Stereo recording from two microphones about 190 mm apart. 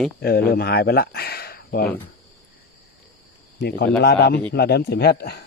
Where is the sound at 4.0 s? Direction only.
55° left (ahead or behind).